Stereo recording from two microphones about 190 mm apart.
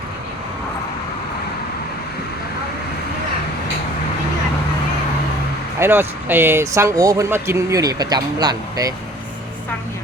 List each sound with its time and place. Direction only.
5.8 s speech: 10° right (ahead or behind)